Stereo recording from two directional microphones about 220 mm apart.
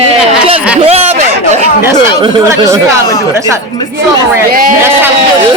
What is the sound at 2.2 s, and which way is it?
Speech, 15° right (ahead or behind).